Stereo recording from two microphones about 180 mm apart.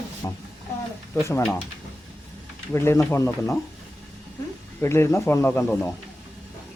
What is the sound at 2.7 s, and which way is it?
Speech, 15° left (ahead or behind).